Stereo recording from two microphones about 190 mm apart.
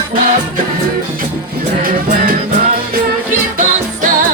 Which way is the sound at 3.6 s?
45° right (ahead or behind).